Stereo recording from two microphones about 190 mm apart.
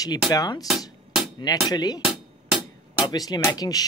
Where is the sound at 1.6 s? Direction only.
20° left (ahead or behind).